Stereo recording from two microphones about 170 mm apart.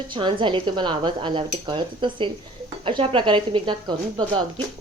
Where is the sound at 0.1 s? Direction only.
30° right (ahead or behind).